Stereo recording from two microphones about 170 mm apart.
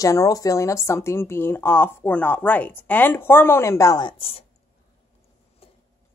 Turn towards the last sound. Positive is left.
turn(degrees=35)  # may be behind; listen again after turning